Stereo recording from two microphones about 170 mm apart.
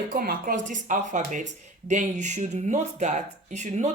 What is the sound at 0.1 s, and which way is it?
Speech, 60° right (ahead or behind).